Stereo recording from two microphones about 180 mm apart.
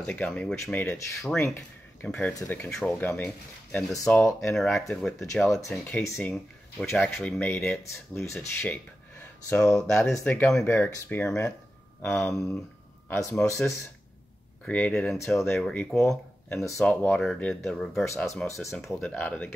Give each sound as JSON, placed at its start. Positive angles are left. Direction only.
{"t": 0.0, "sound": "speech", "side_deg": 5}
{"t": 4.6, "sound": "speech", "side_deg": 0}
{"t": 14.7, "sound": "speech", "side_deg": 5}
{"t": 18.0, "sound": "speech", "side_deg": 15}
{"t": 18.8, "sound": "speech", "side_deg": 0}